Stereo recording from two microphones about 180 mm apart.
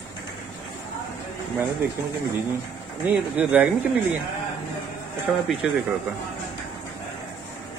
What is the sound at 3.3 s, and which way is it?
Speech, 10° right (ahead or behind).